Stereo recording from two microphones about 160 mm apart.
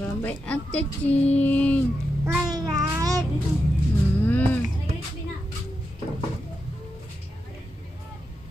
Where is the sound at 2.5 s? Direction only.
20° right (ahead or behind).